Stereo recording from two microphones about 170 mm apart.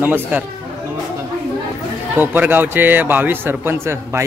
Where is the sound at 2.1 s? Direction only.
10° right (ahead or behind).